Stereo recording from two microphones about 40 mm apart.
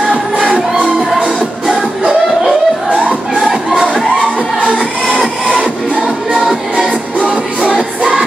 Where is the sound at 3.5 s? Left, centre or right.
Centre.